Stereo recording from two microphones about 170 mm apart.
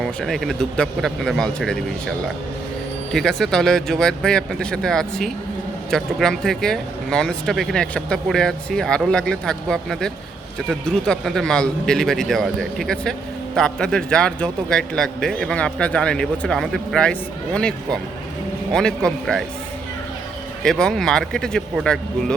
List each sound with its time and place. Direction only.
0.0 s speech: centre (ahead or behind)
20.7 s speech: 5° left (ahead or behind)